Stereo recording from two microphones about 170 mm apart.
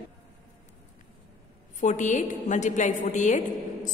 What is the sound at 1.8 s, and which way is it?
A woman's voice, 45° left (ahead or behind).